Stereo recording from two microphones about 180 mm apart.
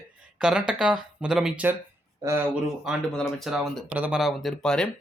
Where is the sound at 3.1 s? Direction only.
5° left (ahead or behind).